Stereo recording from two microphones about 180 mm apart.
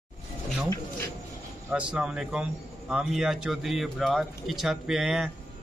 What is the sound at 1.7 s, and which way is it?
Speech, 5° right (ahead or behind).